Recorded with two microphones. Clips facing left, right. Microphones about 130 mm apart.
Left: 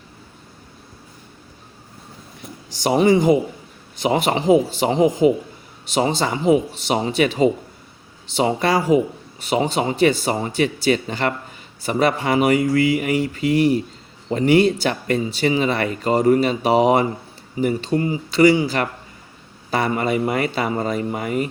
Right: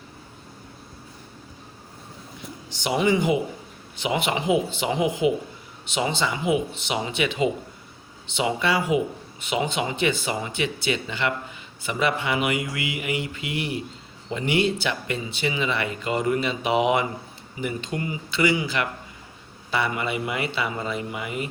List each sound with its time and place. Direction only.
2.6 s speech: 40° left (ahead or behind)